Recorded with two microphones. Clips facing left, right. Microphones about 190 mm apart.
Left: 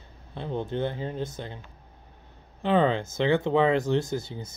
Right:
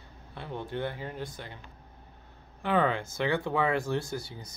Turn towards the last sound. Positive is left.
turn(degrees=25)  # may be behind; listen again after turning